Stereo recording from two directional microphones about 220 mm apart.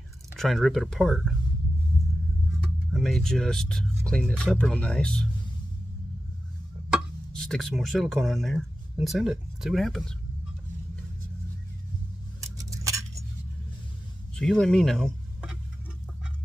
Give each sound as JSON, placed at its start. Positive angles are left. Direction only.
{"t": 0.4, "sound": "speech", "side_deg": 0}
{"t": 2.9, "sound": "speech", "side_deg": 0}
{"t": 6.9, "sound": "speech", "side_deg": 0}
{"t": 12.5, "sound": "a sound", "side_deg": -15}
{"t": 14.3, "sound": "speech", "side_deg": 5}